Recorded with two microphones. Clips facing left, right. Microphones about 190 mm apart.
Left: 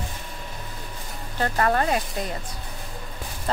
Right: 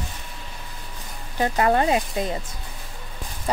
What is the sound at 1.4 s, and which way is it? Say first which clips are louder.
Speech: right 3 dB; 15° right (ahead or behind).